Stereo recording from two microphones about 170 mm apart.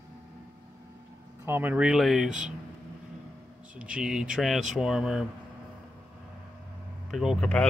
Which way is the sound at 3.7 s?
5° right (ahead or behind).